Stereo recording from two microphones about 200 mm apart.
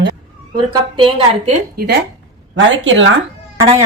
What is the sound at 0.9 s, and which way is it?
Speech, 25° right (ahead or behind).